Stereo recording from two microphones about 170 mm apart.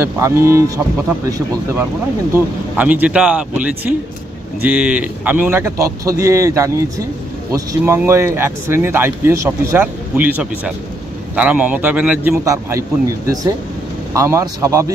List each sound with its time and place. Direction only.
0.0 s speech: 15° right (ahead or behind)
2.3 s speech: 10° right (ahead or behind)
14.1 s speech: 15° right (ahead or behind)